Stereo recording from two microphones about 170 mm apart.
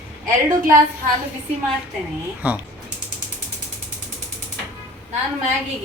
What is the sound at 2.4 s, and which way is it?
Speech, 10° right (ahead or behind).